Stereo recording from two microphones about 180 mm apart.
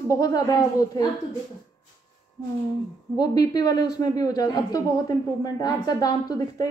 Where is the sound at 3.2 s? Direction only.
20° left (ahead or behind).